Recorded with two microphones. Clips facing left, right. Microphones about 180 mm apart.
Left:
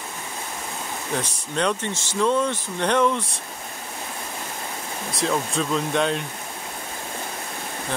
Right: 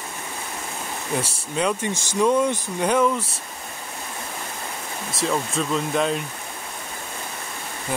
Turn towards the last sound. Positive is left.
turn(degrees=-5)  # may be behind; listen again after turning